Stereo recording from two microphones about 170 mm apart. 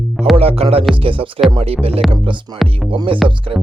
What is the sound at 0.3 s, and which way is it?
Music, 35° right (ahead or behind).